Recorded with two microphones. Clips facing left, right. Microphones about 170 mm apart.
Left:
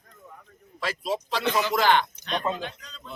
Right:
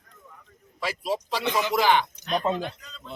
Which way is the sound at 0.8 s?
10° right (ahead or behind).